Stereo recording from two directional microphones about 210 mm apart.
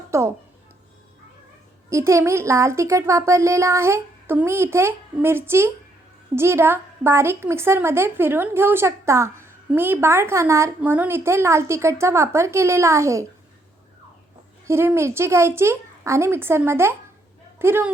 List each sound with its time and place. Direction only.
0.1 s a woman's voice: 15° right (ahead or behind)
1.9 s a woman's voice: 15° right (ahead or behind)
14.7 s a woman's voice: 10° right (ahead or behind)